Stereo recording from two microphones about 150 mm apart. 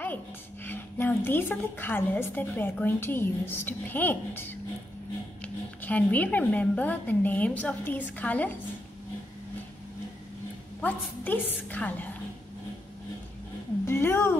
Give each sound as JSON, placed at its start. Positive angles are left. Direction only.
{"t": 0.7, "sound": "a woman's voice", "side_deg": 15}
{"t": 10.8, "sound": "a woman's voice", "side_deg": 10}
{"t": 13.8, "sound": "a sound", "side_deg": 15}